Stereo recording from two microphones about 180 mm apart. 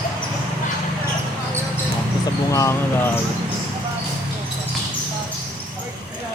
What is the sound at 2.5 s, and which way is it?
Speech, 15° left (ahead or behind).